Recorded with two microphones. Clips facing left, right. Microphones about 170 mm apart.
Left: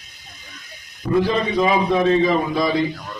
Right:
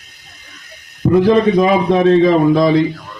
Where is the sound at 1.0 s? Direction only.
60° right (ahead or behind).